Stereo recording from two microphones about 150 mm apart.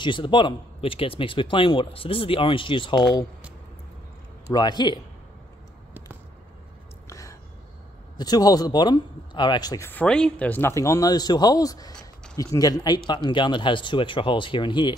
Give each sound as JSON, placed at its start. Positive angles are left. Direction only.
{"t": 0.0, "sound": "speech", "side_deg": 30}
{"t": 4.6, "sound": "speech", "side_deg": 30}
{"t": 7.1, "sound": "a sound", "side_deg": 20}
{"t": 8.2, "sound": "speech", "side_deg": 25}
{"t": 9.8, "sound": "speech", "side_deg": 10}